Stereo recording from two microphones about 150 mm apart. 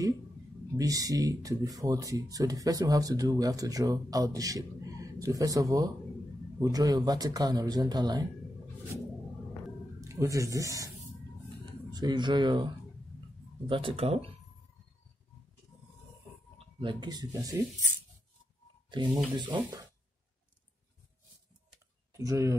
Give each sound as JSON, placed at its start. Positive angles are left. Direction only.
{"t": 0.7, "sound": "speech", "side_deg": -25}
{"t": 9.9, "sound": "speech", "side_deg": -20}
{"t": 11.9, "sound": "speech", "side_deg": -30}
{"t": 13.7, "sound": "speech", "side_deg": -35}
{"t": 16.5, "sound": "speech", "side_deg": -30}
{"t": 18.9, "sound": "speech", "side_deg": -30}
{"t": 22.1, "sound": "speech", "side_deg": -20}